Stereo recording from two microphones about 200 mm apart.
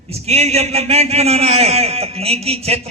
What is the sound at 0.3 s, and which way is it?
A man's voice, 30° right (ahead or behind).